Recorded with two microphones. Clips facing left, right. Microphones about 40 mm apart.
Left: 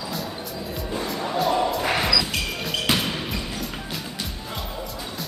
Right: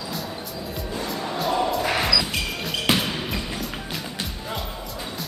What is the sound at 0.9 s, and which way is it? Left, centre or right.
Music, centre.